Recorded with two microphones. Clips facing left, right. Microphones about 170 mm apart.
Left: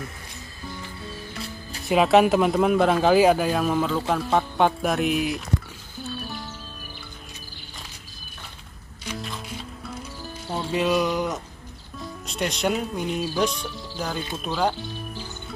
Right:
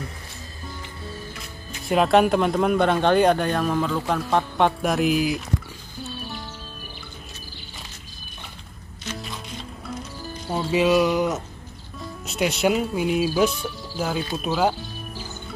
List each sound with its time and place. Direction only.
1.9 s speech: centre (ahead or behind)
9.2 s music: 5° left (ahead or behind)
10.6 s speech: 5° right (ahead or behind)